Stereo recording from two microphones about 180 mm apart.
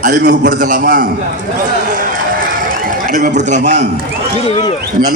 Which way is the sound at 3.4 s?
40° right (ahead or behind).